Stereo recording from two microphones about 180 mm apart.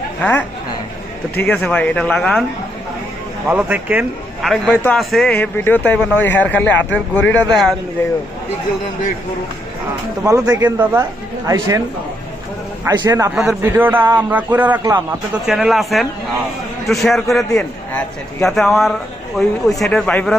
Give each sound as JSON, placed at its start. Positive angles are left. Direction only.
{"t": 0.2, "sound": "a man's voice", "side_deg": 10}
{"t": 1.5, "sound": "a man's voice", "side_deg": 5}
{"t": 3.4, "sound": "a man's voice", "side_deg": -5}
{"t": 10.2, "sound": "a man's voice", "side_deg": -20}
{"t": 12.8, "sound": "a man's voice", "side_deg": -20}
{"t": 13.3, "sound": "a man's voice", "side_deg": -5}